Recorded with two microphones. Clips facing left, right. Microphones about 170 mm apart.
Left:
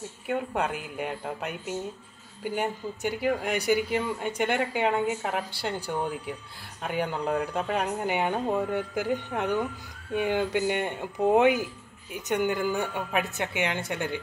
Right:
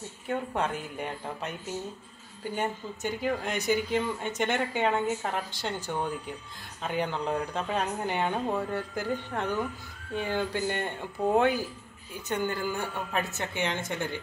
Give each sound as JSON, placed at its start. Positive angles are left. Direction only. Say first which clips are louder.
{"t": 0.3, "sound": "speech", "louder": "left 1 dB", "side_deg": 10}